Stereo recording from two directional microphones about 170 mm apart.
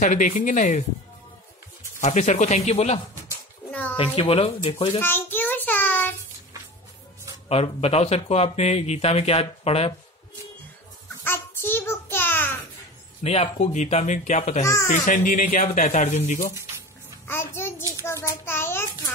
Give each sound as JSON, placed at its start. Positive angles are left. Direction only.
{"t": 0.0, "sound": "speech", "side_deg": 50}
{"t": 2.0, "sound": "speech", "side_deg": 45}
{"t": 5.0, "sound": "child singing", "side_deg": 10}
{"t": 7.4, "sound": "speech", "side_deg": 35}
{"t": 11.2, "sound": "a sound", "side_deg": 15}
{"t": 13.2, "sound": "speech", "side_deg": 35}
{"t": 14.6, "sound": "a child's voice", "side_deg": 15}
{"t": 14.9, "sound": "speech", "side_deg": 50}
{"t": 17.3, "sound": "a sound", "side_deg": 15}